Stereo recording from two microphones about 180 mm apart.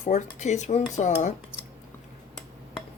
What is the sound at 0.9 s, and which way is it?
Cutlery, 45° left (ahead or behind).